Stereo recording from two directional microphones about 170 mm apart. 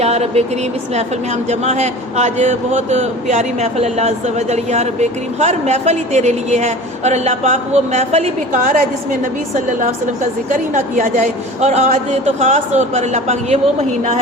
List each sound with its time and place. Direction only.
0.0 s a woman's voice: 40° right (ahead or behind)
10.5 s a woman's voice: 50° right (ahead or behind)